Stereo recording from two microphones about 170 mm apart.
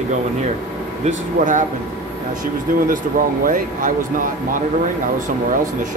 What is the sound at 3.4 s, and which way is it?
Speech, 55° right (ahead or behind).